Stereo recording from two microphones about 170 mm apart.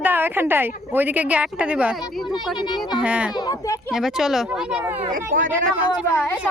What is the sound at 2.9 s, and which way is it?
Speech, 5° right (ahead or behind).